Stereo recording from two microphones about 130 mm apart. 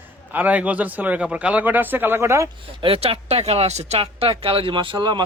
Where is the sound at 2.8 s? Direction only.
45° right (ahead or behind).